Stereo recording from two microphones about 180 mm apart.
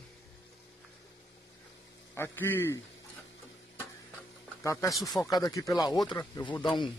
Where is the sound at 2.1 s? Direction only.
10° left (ahead or behind).